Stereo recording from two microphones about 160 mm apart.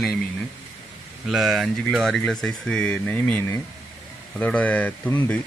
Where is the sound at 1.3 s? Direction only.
Centre (ahead or behind).